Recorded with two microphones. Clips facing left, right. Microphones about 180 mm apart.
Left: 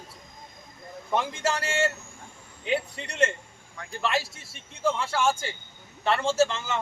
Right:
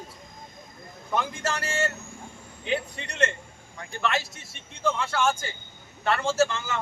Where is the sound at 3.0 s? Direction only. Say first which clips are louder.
Left 2 dB; 30° left (ahead or behind).